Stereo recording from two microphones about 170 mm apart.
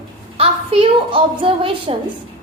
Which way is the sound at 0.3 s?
35° right (ahead or behind).